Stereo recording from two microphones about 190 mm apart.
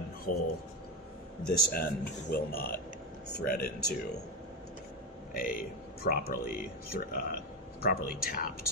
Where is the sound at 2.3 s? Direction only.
50° left (ahead or behind).